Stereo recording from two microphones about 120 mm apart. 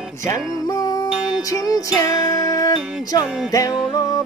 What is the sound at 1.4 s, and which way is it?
Jingle bell, 30° left (ahead or behind).